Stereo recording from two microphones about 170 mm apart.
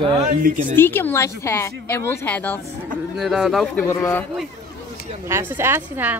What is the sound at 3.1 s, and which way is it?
Speech, centre (ahead or behind).